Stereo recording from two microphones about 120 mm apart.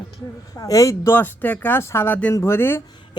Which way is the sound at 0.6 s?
30° left (ahead or behind).